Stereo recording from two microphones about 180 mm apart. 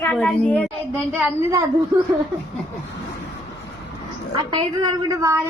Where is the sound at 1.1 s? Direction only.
15° right (ahead or behind).